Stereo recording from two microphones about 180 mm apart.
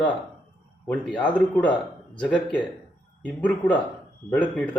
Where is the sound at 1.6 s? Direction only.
25° left (ahead or behind).